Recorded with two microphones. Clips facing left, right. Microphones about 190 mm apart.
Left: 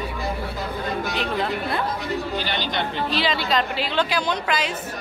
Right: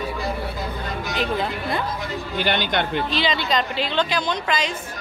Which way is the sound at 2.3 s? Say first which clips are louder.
Right 3 dB; 60° right (ahead or behind).